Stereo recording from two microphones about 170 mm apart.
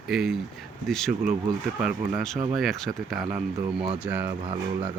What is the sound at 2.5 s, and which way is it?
Speech, centre (ahead or behind).